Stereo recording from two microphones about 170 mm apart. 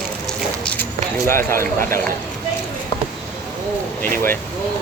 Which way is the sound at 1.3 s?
15° left (ahead or behind).